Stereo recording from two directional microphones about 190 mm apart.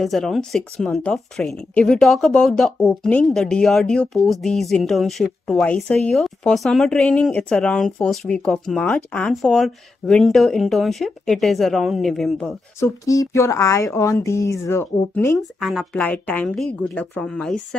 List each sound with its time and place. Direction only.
0.0 s speech: centre (ahead or behind)
13.0 s speech: 15° left (ahead or behind)
15.6 s speech: centre (ahead or behind)